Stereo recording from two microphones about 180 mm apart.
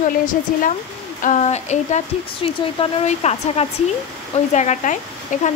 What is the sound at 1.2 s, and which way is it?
Speech, 40° left (ahead or behind).